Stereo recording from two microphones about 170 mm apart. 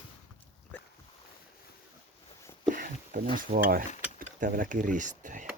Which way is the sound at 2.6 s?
55° right (ahead or behind).